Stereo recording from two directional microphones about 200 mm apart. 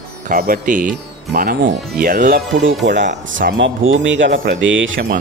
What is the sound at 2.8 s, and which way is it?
Speech, 60° right (ahead or behind).